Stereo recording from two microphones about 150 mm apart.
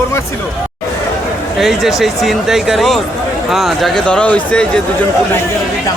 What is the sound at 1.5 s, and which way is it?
Speech, centre (ahead or behind).